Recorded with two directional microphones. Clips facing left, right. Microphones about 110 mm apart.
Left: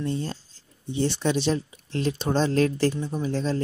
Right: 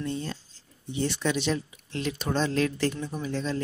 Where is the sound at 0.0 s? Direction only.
35° left (ahead or behind).